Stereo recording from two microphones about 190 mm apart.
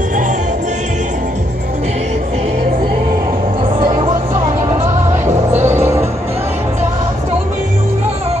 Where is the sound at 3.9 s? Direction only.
30° right (ahead or behind).